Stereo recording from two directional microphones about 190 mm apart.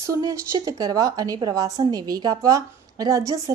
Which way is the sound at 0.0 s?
20° right (ahead or behind).